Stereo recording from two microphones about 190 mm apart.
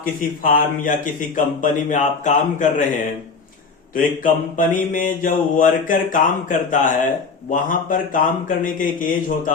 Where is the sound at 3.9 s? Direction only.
45° left (ahead or behind).